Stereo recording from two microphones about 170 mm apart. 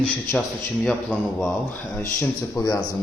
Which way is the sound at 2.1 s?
15° left (ahead or behind).